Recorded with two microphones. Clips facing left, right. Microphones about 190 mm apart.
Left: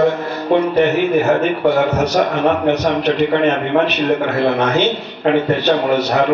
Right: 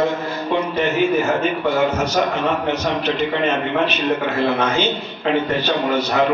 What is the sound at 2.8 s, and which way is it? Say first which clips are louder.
A man's voice: left 5 dB; 65° left (ahead or behind).